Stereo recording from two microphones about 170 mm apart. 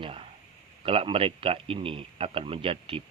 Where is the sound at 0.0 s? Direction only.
35° right (ahead or behind).